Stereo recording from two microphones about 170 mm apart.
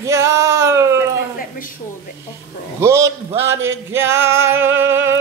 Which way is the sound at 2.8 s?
15° right (ahead or behind).